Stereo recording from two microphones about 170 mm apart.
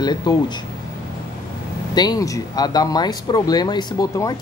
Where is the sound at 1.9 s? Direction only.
25° left (ahead or behind).